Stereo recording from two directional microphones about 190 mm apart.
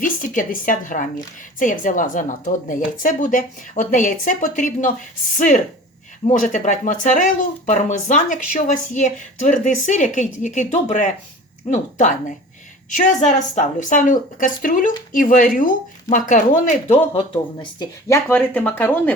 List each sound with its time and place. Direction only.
0.0 s a woman's voice: 45° left (ahead or behind)
6.2 s a woman's voice: 40° left (ahead or behind)
17.6 s speech: 20° left (ahead or behind)
18.3 s speech: 10° left (ahead or behind)